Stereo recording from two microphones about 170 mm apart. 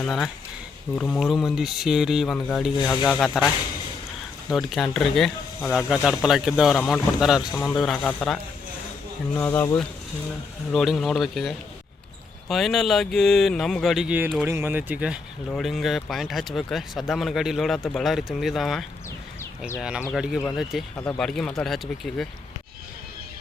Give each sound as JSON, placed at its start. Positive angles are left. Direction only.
{"t": 0.0, "sound": "speech", "side_deg": 0}
{"t": 2.7, "sound": "speech", "side_deg": 20}
{"t": 3.0, "sound": "speech", "side_deg": 0}
{"t": 4.4, "sound": "speech", "side_deg": 0}
{"t": 7.5, "sound": "a man's voice", "side_deg": 10}
{"t": 10.7, "sound": "speech", "side_deg": 0}
{"t": 20.9, "sound": "speech", "side_deg": 10}